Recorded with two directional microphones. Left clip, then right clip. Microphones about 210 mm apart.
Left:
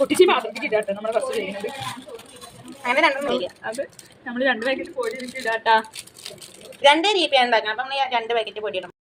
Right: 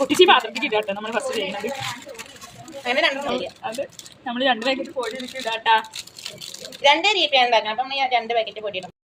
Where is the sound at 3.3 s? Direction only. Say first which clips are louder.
Left 1 dB; centre (ahead or behind).